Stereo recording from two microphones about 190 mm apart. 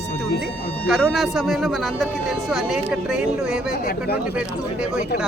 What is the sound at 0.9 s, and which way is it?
Speech, centre (ahead or behind).